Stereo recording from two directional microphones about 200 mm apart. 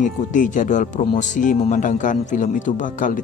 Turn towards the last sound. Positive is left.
turn(degrees=40)  # may be behind; listen again after turning